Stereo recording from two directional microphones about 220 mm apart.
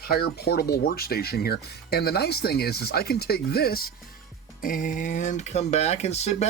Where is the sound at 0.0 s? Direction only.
45° left (ahead or behind).